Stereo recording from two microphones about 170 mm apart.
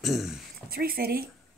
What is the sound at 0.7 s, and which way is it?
Speech, 60° right (ahead or behind).